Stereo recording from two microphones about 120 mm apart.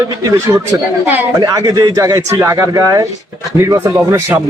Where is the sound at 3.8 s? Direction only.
15° right (ahead or behind).